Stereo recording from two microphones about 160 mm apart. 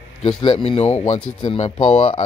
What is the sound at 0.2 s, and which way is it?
Speech, 30° left (ahead or behind).